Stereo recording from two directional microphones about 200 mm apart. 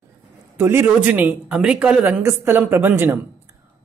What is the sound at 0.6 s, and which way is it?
Speech, 10° right (ahead or behind).